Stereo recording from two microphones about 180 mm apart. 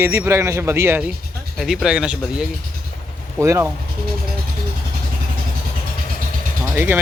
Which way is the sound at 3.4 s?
15° right (ahead or behind).